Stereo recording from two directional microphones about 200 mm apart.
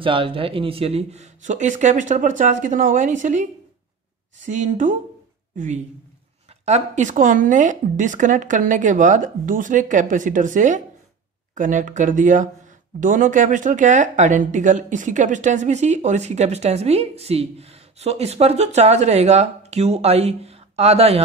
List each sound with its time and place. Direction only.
0.0 s speech: 25° right (ahead or behind)
4.5 s speech: 40° right (ahead or behind)
6.6 s speech: 35° right (ahead or behind)